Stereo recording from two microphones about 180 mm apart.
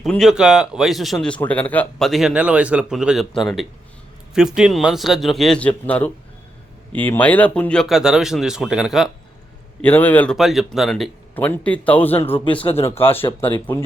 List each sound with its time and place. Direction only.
0.0 s speech: centre (ahead or behind)
9.8 s speech: 10° left (ahead or behind)
10.3 s speech: centre (ahead or behind)
12.3 s speech: 30° left (ahead or behind)
13.7 s speech: 10° left (ahead or behind)